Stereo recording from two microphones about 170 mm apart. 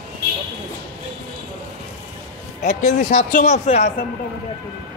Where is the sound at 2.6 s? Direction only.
45° left (ahead or behind).